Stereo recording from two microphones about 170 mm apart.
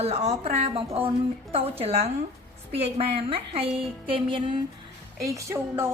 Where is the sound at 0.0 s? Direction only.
35° right (ahead or behind).